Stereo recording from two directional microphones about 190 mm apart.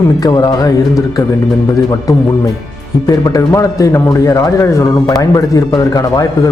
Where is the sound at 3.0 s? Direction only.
15° left (ahead or behind).